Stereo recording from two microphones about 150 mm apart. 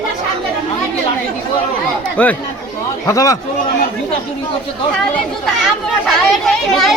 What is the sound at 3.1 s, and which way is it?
Speech, 20° left (ahead or behind).